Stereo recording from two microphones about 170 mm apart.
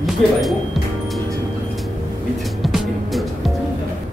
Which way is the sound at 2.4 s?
Centre (ahead or behind).